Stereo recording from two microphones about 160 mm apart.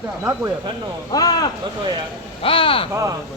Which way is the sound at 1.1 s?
25° left (ahead or behind).